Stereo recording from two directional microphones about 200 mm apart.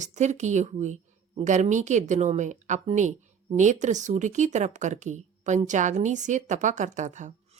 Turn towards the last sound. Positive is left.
turn(degrees=-35)  # may be behind; listen again after turning